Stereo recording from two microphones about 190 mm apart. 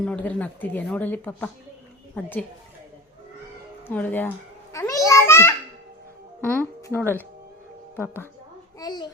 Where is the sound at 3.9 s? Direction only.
10° left (ahead or behind).